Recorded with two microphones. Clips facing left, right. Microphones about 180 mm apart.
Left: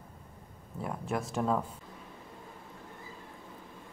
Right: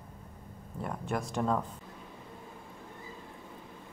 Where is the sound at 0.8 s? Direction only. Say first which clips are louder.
Even; centre (ahead or behind).